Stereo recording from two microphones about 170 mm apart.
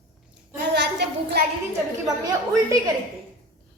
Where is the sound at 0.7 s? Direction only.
80° right.